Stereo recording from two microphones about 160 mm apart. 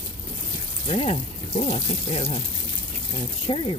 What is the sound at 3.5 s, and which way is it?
Speech, 35° left (ahead or behind).